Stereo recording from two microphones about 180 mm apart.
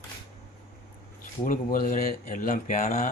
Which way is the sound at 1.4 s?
50° left (ahead or behind).